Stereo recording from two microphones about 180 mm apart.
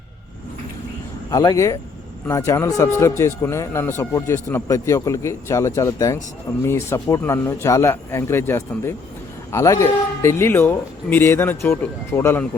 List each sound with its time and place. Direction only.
1.3 s speech: 20° left (ahead or behind)